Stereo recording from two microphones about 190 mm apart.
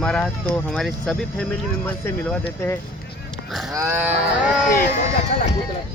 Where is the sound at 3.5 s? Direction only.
Centre (ahead or behind).